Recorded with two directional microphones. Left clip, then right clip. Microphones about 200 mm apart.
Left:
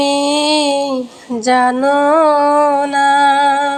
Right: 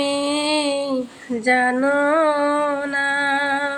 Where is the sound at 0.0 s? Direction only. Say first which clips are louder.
Left 7 dB; 15° left (ahead or behind).